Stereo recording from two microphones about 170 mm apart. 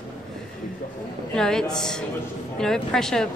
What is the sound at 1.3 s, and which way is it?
A woman's voice, 5° left (ahead or behind).